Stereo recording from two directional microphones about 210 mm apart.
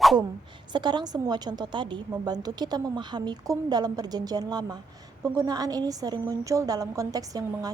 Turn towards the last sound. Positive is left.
turn(degrees=-15)  # may be behind; listen again after turning